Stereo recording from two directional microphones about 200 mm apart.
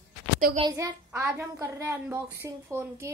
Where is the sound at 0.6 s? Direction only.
15° right (ahead or behind).